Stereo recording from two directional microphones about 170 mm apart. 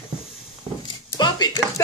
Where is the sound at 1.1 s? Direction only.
25° left (ahead or behind).